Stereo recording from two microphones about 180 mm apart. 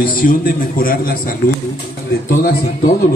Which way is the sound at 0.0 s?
50° left (ahead or behind).